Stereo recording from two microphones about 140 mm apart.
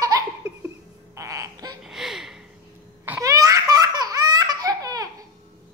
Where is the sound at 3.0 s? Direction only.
20° right (ahead or behind).